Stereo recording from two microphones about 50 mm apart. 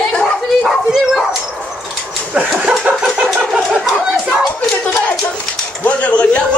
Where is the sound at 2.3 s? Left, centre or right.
Right.